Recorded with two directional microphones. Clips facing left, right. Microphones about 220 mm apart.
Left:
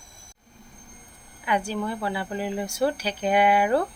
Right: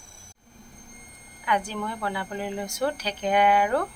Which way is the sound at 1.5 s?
5° left (ahead or behind).